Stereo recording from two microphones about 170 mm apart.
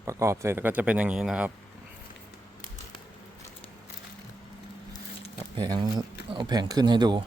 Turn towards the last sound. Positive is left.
turn(degrees=-25)  # may be behind; listen again after turning